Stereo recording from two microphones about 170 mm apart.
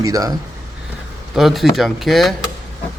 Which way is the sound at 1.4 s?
Centre (ahead or behind).